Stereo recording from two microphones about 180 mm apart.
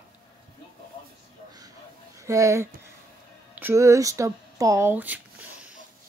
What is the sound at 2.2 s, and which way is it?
Speech, 15° right (ahead or behind).